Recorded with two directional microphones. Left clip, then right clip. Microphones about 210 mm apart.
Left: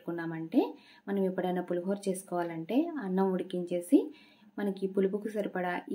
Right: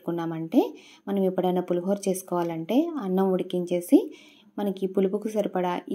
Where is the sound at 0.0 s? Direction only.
25° right (ahead or behind).